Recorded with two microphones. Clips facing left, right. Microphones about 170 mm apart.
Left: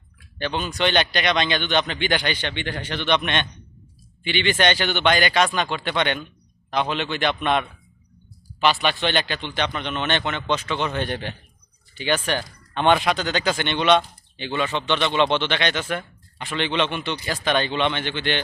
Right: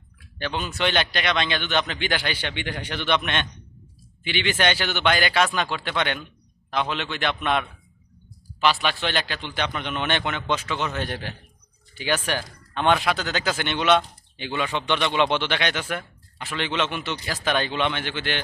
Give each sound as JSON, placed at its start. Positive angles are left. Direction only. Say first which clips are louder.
{"t": 0.3, "sound": "a man's voice", "louder": "left 2 dB", "side_deg": 0}